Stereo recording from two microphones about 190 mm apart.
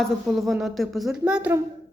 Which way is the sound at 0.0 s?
Centre (ahead or behind).